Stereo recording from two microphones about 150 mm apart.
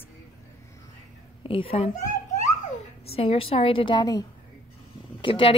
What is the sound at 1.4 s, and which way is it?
A child's voice, 35° left (ahead or behind).